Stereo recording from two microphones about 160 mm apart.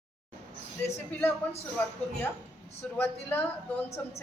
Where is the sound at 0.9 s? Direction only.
15° left (ahead or behind).